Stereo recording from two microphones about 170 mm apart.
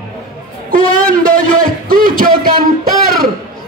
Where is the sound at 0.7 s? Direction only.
55° right (ahead or behind).